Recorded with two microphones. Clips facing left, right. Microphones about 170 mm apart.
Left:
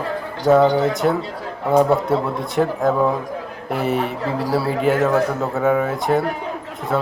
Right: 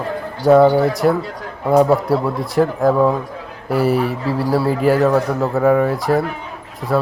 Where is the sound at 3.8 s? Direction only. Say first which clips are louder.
Right 5 dB; 35° right (ahead or behind).